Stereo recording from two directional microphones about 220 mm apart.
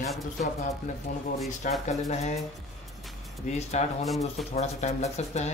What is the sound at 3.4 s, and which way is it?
Speech, 30° left (ahead or behind).